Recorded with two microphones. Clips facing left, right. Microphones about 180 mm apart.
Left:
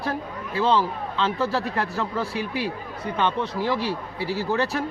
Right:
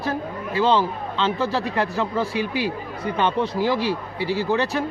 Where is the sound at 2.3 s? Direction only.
90° right.